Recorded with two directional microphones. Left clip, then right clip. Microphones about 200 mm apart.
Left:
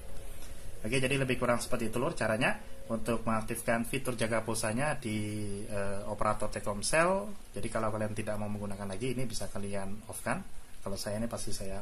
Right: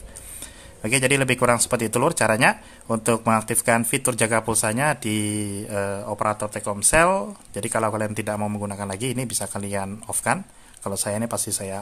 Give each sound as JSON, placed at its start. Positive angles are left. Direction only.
{"t": 0.8, "sound": "speech", "side_deg": -40}